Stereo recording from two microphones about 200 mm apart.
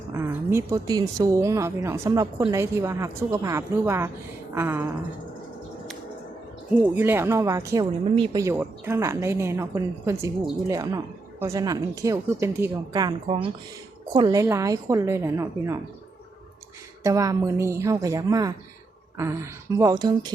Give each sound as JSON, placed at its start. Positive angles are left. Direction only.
{"t": 0.1, "sound": "speech", "side_deg": -10}
{"t": 6.7, "sound": "a woman's voice", "side_deg": -10}
{"t": 17.0, "sound": "speech", "side_deg": -15}